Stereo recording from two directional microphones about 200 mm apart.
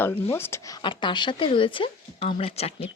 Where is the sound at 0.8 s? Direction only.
25° left (ahead or behind).